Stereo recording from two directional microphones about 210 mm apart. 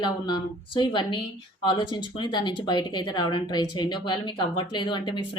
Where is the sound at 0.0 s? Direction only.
25° left (ahead or behind).